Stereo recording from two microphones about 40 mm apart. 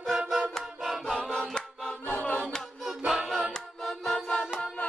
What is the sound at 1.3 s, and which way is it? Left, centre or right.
Choir, centre.